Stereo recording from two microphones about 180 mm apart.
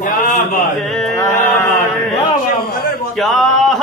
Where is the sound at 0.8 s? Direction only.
Centre (ahead or behind).